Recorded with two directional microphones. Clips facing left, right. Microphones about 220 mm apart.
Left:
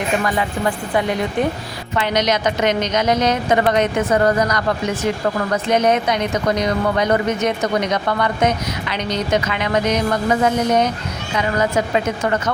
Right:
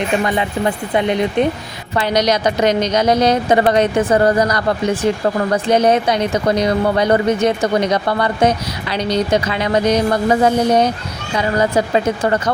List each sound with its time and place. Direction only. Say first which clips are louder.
0.3 s speech: right 2 dB; 20° right (ahead or behind)
2.0 s speech: right 3 dB; 35° right (ahead or behind)